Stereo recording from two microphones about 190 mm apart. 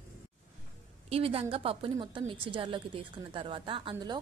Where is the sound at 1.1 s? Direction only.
30° right (ahead or behind).